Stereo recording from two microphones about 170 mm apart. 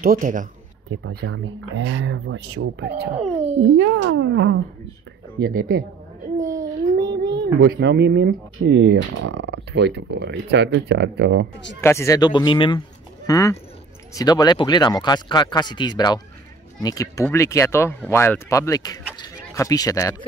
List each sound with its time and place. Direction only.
0.0 s speech: 55° right (ahead or behind)
1.0 s speech: 90° right
5.4 s speech: 60° right (ahead or behind)
6.4 s babbling: 20° right (ahead or behind)
7.5 s speech: 60° right (ahead or behind); by 11.4 s 80° right
11.8 s speech: 15° left (ahead or behind)
13.3 s speech: 15° left (ahead or behind)